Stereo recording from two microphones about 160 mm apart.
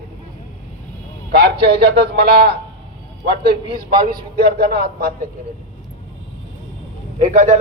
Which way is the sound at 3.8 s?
65° right (ahead or behind).